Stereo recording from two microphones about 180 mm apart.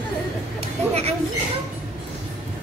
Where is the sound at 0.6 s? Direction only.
35° right (ahead or behind).